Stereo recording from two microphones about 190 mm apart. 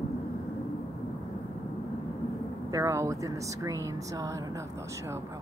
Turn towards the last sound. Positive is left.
turn(degrees=-20)  # may be behind; listen again after turning